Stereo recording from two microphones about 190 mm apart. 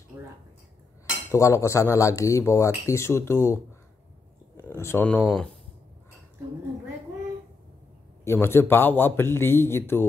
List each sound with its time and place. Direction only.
0.1 s speech: 15° right (ahead or behind)
1.3 s speech: 15° left (ahead or behind)
8.3 s speech: 10° left (ahead or behind)